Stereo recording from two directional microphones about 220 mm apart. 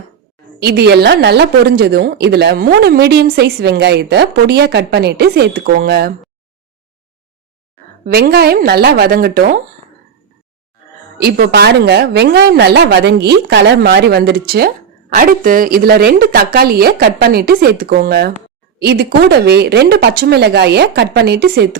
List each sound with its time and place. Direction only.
0.6 s a woman's voice: 45° right (ahead or behind)
8.0 s a woman's voice: 45° right (ahead or behind)
11.2 s a woman's voice: 45° right (ahead or behind)